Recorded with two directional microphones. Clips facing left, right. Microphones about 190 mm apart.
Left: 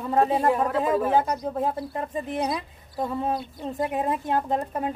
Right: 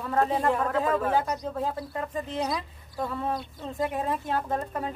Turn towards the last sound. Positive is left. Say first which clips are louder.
# left 4 dB
turn(degrees=20)  # may be behind; listen again after turning